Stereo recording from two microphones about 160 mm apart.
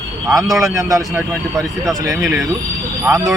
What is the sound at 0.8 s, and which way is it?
Speech, 20° right (ahead or behind).